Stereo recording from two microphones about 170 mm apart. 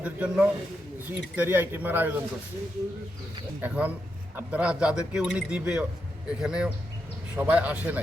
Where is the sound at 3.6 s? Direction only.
10° right (ahead or behind).